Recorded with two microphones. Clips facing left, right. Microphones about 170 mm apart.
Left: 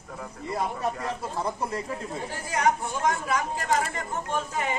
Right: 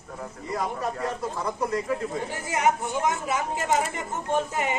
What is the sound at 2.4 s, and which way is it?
Speech, 20° right (ahead or behind).